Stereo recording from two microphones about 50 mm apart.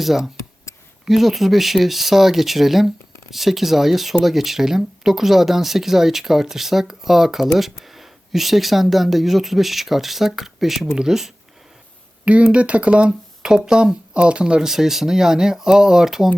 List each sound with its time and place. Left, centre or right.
0.0 s speech: centre
12.2 s speech: right
14.7 s speech: centre